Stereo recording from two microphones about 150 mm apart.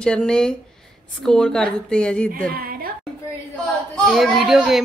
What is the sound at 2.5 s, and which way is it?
Speech, 80° right.